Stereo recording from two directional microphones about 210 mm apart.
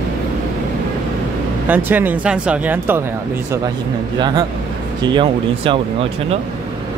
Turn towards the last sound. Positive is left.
turn(degrees=-25)  # may be behind; listen again after turning